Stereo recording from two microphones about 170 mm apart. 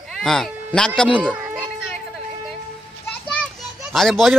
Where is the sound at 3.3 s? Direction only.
Centre (ahead or behind).